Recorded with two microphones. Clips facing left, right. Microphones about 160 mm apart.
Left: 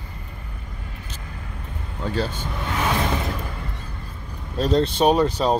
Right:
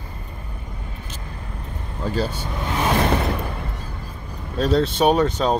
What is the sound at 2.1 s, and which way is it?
Speech, 10° right (ahead or behind).